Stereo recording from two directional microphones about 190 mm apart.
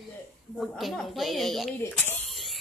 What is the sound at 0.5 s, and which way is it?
A woman's voice, centre (ahead or behind).